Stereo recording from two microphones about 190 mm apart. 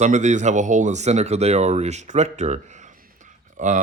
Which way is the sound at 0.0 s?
40° right (ahead or behind).